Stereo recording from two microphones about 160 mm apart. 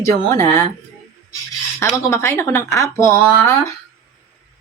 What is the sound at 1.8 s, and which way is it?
Speech, 20° left (ahead or behind).